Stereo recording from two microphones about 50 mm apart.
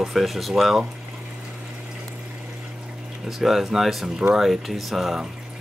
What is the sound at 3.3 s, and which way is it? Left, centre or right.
Speech, centre.